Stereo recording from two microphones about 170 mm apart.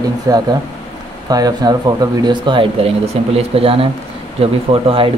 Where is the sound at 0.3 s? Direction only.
20° right (ahead or behind).